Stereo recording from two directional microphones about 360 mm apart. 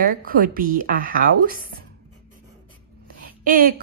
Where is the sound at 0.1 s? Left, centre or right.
Right.